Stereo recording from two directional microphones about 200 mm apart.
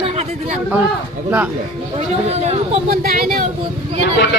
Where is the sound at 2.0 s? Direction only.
30° right (ahead or behind).